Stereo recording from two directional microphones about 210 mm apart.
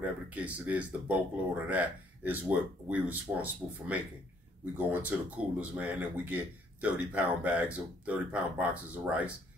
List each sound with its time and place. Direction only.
0.0 s speech: 5° right (ahead or behind)